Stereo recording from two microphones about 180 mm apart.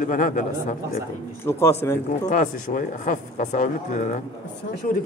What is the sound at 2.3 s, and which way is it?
A man's voice, 45° left (ahead or behind).